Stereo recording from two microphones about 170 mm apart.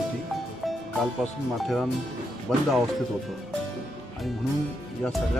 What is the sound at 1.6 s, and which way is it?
Speech, centre (ahead or behind).